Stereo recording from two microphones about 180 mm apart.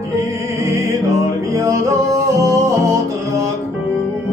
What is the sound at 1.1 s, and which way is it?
Music, 15° right (ahead or behind).